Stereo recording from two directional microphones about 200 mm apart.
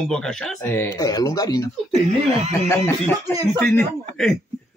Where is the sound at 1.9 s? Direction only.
30° right (ahead or behind).